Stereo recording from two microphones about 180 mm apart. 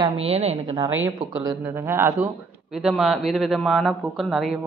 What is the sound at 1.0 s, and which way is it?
Speech, 20° right (ahead or behind).